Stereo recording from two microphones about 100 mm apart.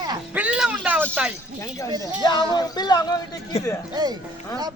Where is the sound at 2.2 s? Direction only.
45° left (ahead or behind).